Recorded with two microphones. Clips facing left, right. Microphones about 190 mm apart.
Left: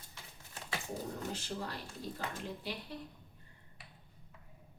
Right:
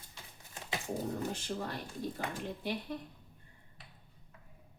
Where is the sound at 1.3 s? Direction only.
50° right (ahead or behind).